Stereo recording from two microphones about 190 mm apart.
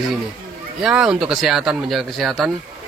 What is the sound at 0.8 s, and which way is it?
Speech, 5° right (ahead or behind).